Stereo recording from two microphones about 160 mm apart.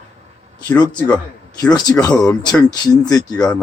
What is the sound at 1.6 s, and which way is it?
Speech, 25° left (ahead or behind).